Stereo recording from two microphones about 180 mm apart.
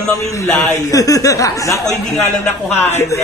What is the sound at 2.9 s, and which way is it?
Speech, 15° left (ahead or behind).